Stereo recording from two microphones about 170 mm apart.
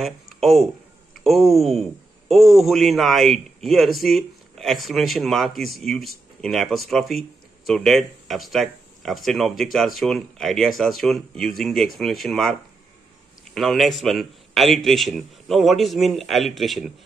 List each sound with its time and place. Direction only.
0.0 s speech: centre (ahead or behind)
13.6 s speech: centre (ahead or behind)